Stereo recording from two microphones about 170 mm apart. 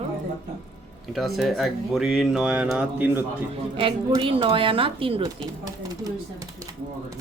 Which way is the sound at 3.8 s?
30° right (ahead or behind).